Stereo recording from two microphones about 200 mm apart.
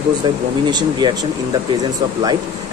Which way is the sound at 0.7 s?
20° right (ahead or behind).